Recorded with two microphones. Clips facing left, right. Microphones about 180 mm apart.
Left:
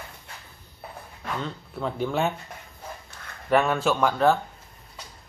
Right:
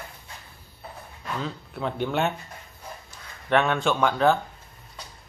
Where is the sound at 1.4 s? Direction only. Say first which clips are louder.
Right 1 dB; centre (ahead or behind).